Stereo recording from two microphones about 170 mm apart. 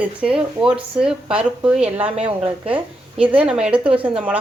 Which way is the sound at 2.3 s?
35° right (ahead or behind).